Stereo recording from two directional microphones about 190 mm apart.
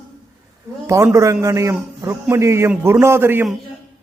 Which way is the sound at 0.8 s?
15° right (ahead or behind).